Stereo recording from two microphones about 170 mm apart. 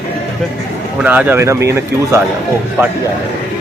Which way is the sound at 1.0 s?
10° right (ahead or behind).